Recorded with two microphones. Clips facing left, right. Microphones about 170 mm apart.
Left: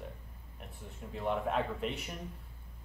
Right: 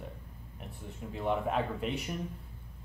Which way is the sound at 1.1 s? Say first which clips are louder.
Right 2 dB; centre (ahead or behind).